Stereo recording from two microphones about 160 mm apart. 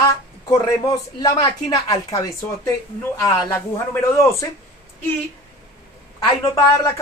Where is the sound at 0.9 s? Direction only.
20° left (ahead or behind).